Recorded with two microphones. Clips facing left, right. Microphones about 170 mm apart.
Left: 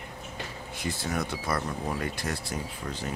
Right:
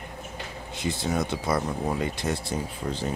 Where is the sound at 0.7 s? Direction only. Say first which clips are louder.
Right 4 dB; 20° right (ahead or behind).